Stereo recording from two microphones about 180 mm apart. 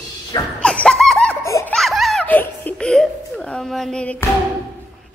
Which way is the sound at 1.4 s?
15° left (ahead or behind).